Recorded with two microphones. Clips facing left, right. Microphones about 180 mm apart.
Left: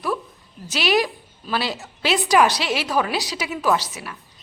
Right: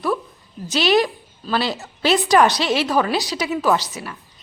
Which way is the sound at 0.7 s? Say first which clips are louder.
Right 3 dB; 5° left (ahead or behind).